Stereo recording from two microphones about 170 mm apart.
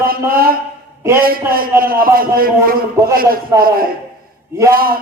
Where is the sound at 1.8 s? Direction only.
60° right (ahead or behind).